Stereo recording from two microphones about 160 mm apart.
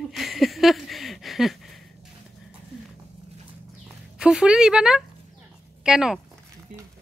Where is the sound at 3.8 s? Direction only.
5° right (ahead or behind).